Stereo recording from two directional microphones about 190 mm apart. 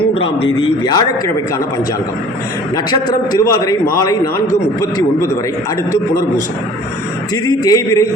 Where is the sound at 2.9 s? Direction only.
20° left (ahead or behind).